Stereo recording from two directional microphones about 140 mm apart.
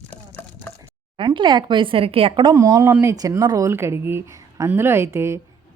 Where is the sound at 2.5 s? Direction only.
25° right (ahead or behind).